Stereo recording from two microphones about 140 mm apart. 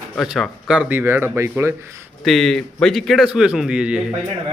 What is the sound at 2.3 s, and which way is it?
A man's voice, centre (ahead or behind).